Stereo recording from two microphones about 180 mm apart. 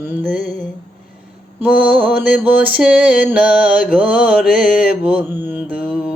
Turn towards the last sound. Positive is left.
turn(degrees=-5)  # may be behind; listen again after turning